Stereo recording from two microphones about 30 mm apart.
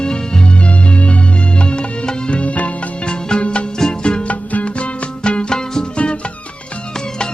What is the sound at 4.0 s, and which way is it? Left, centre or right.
Music, left.